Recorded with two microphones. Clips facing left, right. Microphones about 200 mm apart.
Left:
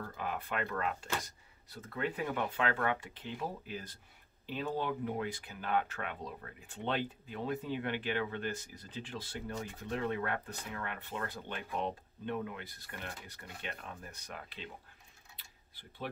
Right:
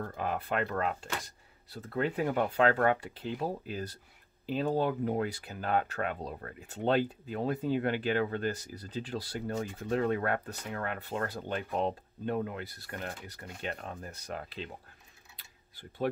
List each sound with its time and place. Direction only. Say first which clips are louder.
0.0 s speech: right 5 dB; 45° right (ahead or behind)
2.1 s speech: right 9 dB; 45° right (ahead or behind)